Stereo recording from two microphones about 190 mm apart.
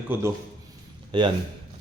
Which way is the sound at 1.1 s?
25° right (ahead or behind).